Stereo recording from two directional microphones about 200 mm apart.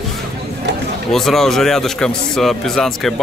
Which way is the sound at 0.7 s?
60° right (ahead or behind).